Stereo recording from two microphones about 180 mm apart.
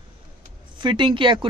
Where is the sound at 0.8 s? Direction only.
25° right (ahead or behind).